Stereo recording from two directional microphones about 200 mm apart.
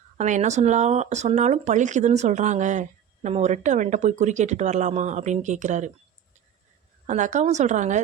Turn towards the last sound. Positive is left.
turn(degrees=-35)  # may be behind; listen again after turning